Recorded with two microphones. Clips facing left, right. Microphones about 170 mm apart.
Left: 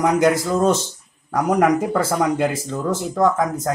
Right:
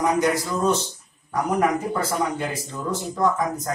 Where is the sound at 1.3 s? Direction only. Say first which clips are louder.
Left 5 dB; 90° left.